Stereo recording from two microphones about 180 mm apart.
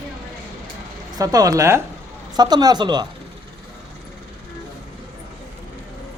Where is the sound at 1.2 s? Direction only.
20° right (ahead or behind).